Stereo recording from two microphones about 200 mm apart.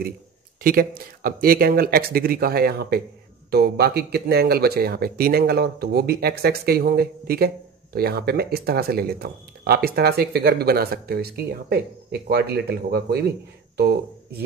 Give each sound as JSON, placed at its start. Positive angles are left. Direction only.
{"t": 0.6, "sound": "speech", "side_deg": -45}